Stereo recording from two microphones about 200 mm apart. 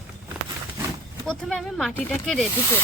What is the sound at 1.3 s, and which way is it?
Speech, 5° left (ahead or behind).